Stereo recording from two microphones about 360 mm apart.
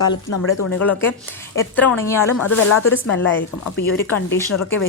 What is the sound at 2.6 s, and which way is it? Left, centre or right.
Speech, left.